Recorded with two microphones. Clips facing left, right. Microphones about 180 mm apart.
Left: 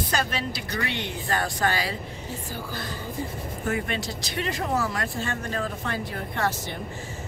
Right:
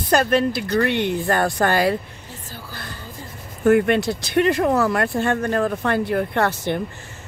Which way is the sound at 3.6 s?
60° right (ahead or behind).